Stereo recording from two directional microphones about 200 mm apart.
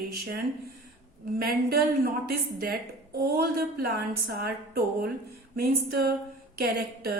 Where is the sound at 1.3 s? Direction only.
50° right (ahead or behind).